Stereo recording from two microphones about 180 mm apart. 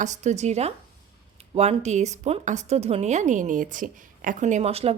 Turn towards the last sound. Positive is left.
turn(degrees=-35)  # may be behind; listen again after turning